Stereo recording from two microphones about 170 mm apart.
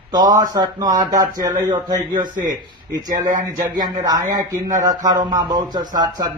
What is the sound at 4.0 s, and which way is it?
A man's voice, 20° right (ahead or behind).